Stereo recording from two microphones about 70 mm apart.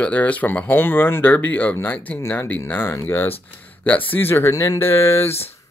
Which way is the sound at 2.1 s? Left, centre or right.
Left.